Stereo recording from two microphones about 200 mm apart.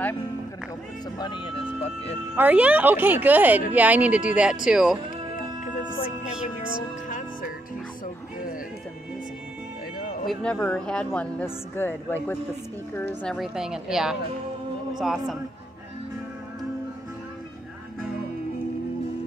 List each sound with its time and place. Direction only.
1.1 s speech: 25° left (ahead or behind)
2.3 s a woman's voice: 10° right (ahead or behind)
7.1 s music: 40° left (ahead or behind)
10.2 s a woman's voice: 5° left (ahead or behind)